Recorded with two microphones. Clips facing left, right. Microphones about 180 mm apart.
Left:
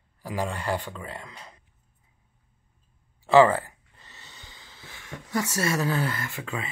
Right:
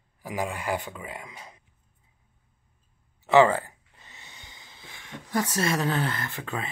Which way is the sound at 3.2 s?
20° right (ahead or behind).